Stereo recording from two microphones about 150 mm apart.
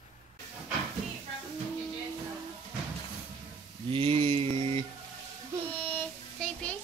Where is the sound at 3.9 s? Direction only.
40° right (ahead or behind).